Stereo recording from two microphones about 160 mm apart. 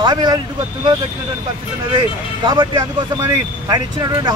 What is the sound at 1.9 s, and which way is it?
Speech, 30° right (ahead or behind).